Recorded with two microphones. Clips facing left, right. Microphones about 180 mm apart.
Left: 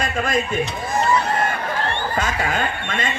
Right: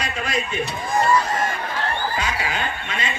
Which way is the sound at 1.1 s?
60° left (ahead or behind).